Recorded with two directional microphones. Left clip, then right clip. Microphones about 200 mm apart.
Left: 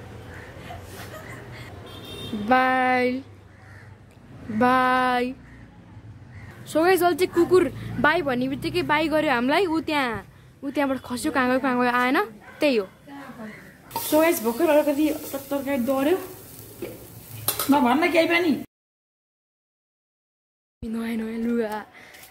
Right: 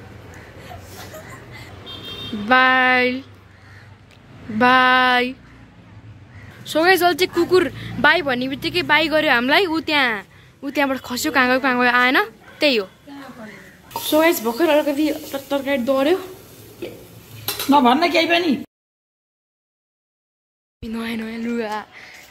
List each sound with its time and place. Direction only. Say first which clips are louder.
2.4 s speech: right 6 dB; centre (ahead or behind)
4.6 s speech: right 6 dB; centre (ahead or behind)
6.6 s speech: right 4 dB; centre (ahead or behind)
14.1 s speech: right 4 dB; centre (ahead or behind)
17.8 s speech: right 4 dB; 35° right (ahead or behind)
20.8 s speech: right 3 dB; 5° left (ahead or behind)